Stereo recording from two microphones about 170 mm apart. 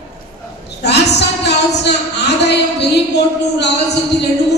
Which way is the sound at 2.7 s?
90° left.